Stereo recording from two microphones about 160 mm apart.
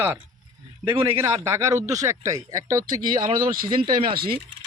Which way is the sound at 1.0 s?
15° right (ahead or behind).